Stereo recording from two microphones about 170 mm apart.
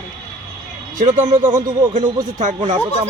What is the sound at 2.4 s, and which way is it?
Speech, 45° right (ahead or behind).